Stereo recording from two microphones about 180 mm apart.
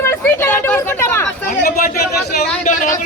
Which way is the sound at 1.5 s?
55° left (ahead or behind).